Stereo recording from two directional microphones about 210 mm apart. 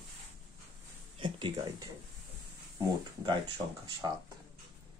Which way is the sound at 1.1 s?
25° right (ahead or behind).